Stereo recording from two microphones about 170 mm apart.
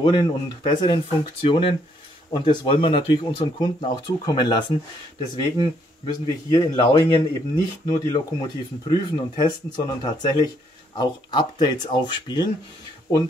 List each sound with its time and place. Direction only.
0.0 s speech: 25° left (ahead or behind)